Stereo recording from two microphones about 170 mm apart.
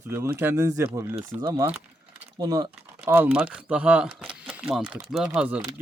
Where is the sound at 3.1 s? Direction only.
10° right (ahead or behind).